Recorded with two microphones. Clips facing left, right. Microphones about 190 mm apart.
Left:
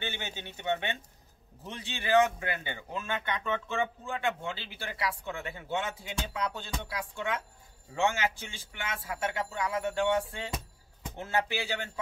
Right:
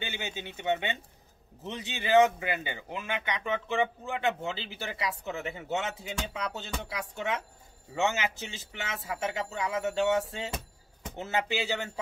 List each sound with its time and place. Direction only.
0.0 s speech: 15° right (ahead or behind)